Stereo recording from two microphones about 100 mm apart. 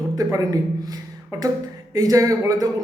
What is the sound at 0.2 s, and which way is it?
Speech, 35° right (ahead or behind).